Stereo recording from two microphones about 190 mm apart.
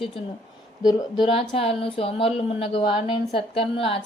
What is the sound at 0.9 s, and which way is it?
Speech, 20° left (ahead or behind).